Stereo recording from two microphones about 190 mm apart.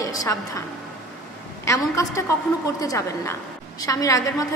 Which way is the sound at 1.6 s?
15° left (ahead or behind).